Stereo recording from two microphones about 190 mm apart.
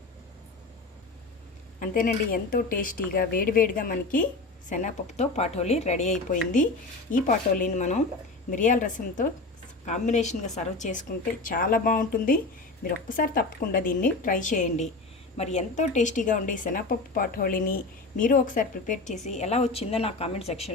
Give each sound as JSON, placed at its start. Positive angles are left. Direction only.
{"t": 1.8, "sound": "a woman's voice", "side_deg": 45}